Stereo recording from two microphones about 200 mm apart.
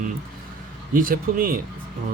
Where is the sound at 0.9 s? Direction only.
45° right (ahead or behind).